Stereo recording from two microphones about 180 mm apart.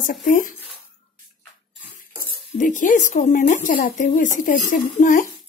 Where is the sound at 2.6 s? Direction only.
45° left (ahead or behind).